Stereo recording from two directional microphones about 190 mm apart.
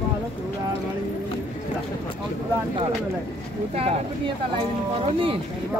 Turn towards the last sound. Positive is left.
turn(degrees=-30)  # may be behind; listen again after turning